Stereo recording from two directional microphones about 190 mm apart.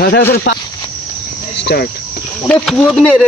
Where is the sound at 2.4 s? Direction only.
5° left (ahead or behind).